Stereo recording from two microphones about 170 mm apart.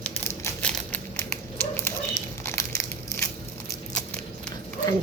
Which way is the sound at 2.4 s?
15° left (ahead or behind).